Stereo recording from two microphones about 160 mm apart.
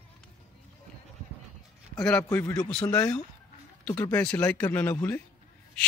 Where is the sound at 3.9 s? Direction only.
15° left (ahead or behind).